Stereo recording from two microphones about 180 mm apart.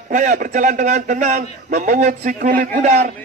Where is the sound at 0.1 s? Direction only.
45° right (ahead or behind).